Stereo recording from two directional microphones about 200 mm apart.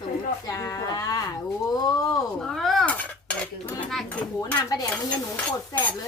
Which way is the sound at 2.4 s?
Centre (ahead or behind).